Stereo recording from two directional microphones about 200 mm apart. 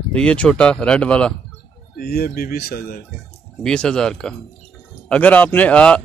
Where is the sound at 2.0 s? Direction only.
50° left (ahead or behind).